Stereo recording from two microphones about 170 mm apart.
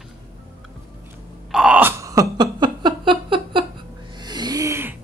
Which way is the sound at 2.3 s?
25° right (ahead or behind).